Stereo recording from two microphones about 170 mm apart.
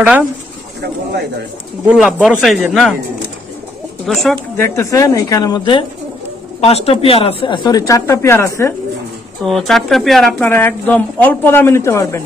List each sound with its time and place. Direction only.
1.9 s speech: 5° right (ahead or behind)
4.0 s speech: centre (ahead or behind)
4.6 s speech: 15° left (ahead or behind)
9.5 s a woman's voice: centre (ahead or behind)